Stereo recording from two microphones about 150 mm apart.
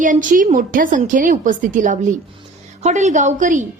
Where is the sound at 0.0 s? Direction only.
60° right (ahead or behind).